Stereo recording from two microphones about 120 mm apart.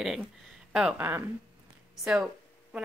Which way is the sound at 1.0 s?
15° right (ahead or behind).